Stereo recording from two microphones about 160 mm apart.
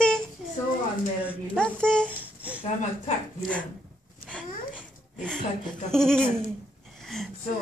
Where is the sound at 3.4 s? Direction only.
10° left (ahead or behind).